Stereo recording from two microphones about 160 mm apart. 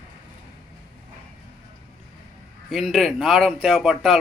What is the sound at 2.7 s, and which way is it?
Speech, centre (ahead or behind).